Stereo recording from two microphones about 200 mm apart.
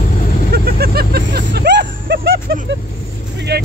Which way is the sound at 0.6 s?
50° right (ahead or behind).